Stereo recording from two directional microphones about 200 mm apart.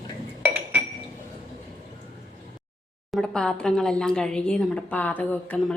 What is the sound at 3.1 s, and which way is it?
Speech, 5° left (ahead or behind).